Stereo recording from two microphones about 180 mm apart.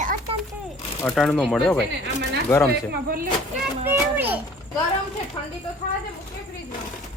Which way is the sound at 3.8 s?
10° right (ahead or behind).